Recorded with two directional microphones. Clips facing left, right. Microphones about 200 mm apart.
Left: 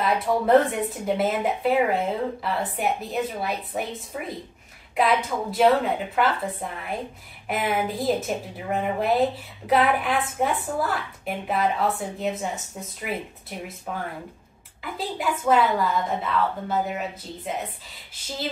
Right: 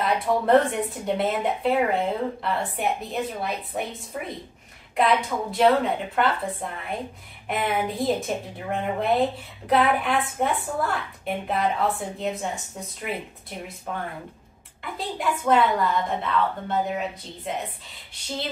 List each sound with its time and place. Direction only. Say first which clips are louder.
0.0 s speech: even; centre (ahead or behind)